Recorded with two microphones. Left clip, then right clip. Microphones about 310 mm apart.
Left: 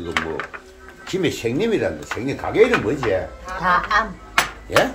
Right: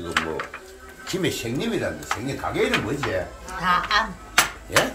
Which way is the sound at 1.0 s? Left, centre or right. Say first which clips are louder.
Left 4 dB; centre.